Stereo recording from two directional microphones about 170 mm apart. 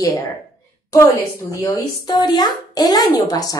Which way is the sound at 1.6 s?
20° left (ahead or behind).